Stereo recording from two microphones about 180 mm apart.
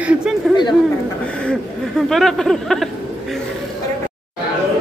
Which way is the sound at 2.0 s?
Centre (ahead or behind).